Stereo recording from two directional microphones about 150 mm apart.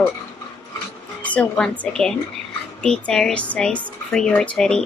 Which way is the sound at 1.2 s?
10° left (ahead or behind).